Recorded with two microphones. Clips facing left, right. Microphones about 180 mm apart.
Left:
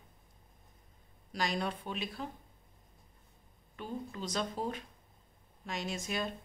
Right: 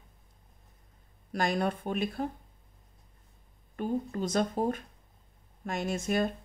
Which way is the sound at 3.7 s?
50° right (ahead or behind).